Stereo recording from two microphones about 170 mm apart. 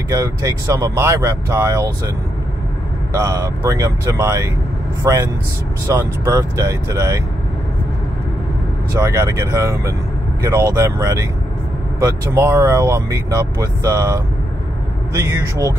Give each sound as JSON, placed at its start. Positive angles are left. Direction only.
{"t": 0.1, "sound": "speech", "side_deg": -20}
{"t": 3.2, "sound": "speech", "side_deg": -15}
{"t": 9.0, "sound": "speech", "side_deg": -15}